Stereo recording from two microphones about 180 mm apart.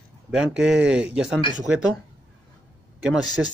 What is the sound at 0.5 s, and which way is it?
Speech, 5° right (ahead or behind).